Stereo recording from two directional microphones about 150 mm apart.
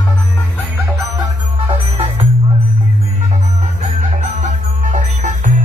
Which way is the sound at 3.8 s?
55° right (ahead or behind).